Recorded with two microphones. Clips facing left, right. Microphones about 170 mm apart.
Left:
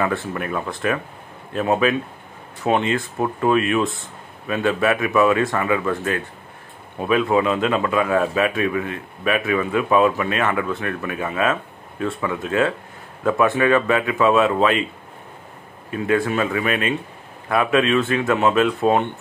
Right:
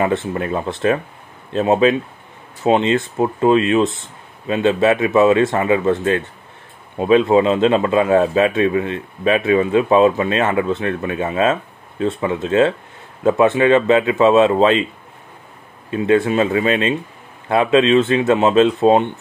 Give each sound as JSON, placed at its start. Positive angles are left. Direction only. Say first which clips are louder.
{"t": 0.0, "sound": "a man's voice", "louder": "right 4 dB", "side_deg": -25}
{"t": 15.9, "sound": "a man's voice", "louder": "right 5 dB", "side_deg": -25}